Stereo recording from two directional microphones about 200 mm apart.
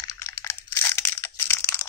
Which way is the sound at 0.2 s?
15° left (ahead or behind).